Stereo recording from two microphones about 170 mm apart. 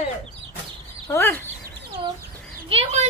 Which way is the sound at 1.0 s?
15° left (ahead or behind).